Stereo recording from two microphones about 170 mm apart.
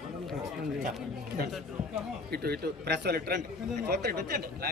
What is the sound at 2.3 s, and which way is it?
A man's voice, 70° right (ahead or behind).